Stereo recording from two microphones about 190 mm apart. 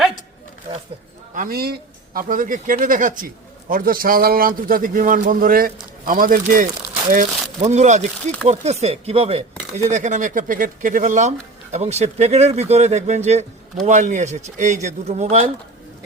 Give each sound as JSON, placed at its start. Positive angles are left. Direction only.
{"t": 1.4, "sound": "a man's voice", "side_deg": -50}